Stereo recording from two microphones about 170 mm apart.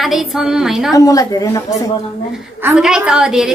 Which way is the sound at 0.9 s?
20° left (ahead or behind).